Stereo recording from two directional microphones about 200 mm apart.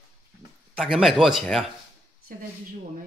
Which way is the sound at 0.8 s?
Centre (ahead or behind).